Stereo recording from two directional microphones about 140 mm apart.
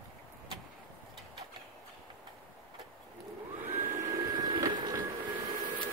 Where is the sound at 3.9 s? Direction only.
20° right (ahead or behind).